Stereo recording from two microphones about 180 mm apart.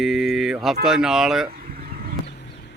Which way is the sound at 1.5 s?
55° right (ahead or behind).